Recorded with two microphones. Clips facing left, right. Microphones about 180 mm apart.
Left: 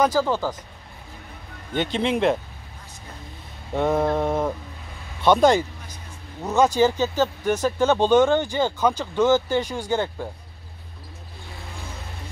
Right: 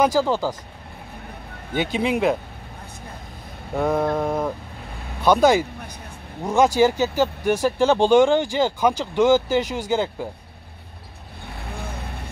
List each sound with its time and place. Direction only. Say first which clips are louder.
0.0 s speech: right 2 dB; 10° right (ahead or behind)
1.8 s mantra: right 1 dB; 5° right (ahead or behind)
3.7 s mantra: even; centre (ahead or behind)
6.4 s speech: right 1 dB; 10° right (ahead or behind)
11.4 s vehicle: right 6 dB; 60° right (ahead or behind)